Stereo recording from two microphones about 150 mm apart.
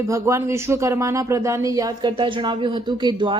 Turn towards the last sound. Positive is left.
turn(degrees=-35)  # may be behind; listen again after turning